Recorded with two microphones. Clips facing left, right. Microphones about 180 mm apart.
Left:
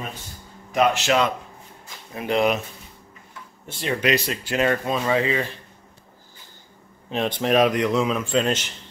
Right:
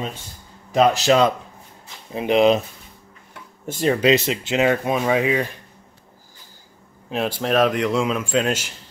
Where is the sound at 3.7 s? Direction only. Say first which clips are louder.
Right 7 dB; 40° right (ahead or behind).